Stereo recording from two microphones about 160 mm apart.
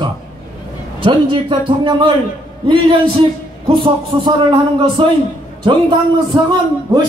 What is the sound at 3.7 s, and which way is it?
A man's voice, 30° right (ahead or behind).